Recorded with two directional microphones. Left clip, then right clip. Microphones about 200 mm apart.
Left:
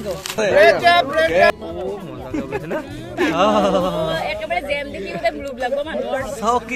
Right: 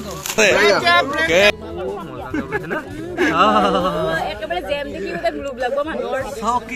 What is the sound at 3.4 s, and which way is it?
Speech, 25° left (ahead or behind).